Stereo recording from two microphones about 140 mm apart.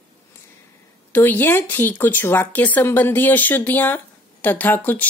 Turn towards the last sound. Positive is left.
turn(degrees=15)  # may be behind; listen again after turning